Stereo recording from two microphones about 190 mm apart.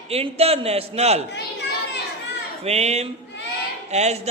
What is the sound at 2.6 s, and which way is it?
A man's voice, 35° right (ahead or behind).